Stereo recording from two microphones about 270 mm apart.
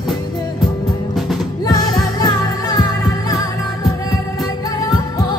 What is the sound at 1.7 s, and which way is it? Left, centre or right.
Music, centre.